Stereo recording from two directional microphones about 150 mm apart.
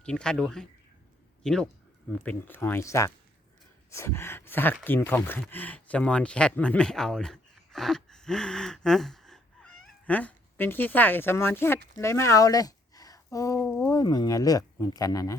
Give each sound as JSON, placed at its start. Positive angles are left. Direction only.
{"t": 0.0, "sound": "speech", "side_deg": 5}
{"t": 2.5, "sound": "speech", "side_deg": 15}
{"t": 13.6, "sound": "speech", "side_deg": 5}
{"t": 13.8, "sound": "speech", "side_deg": 25}